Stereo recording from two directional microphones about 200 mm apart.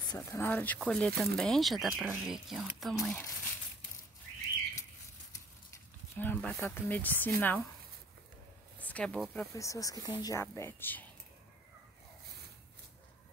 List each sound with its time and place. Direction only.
0.0 s speech: 15° left (ahead or behind)
6.1 s a woman's voice: 10° left (ahead or behind)
8.7 s speech: 5° left (ahead or behind)
9.5 s a woman's voice: 15° left (ahead or behind)